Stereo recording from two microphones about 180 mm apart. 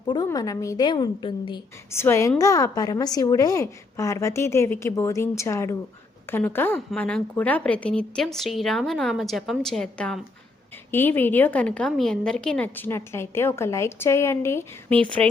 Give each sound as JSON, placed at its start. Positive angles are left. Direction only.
{"t": 0.1, "sound": "a woman's voice", "side_deg": 20}
{"t": 1.9, "sound": "a woman's voice", "side_deg": 15}